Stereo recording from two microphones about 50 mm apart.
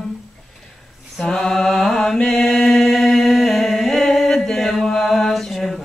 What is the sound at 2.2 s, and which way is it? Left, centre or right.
Singing, centre.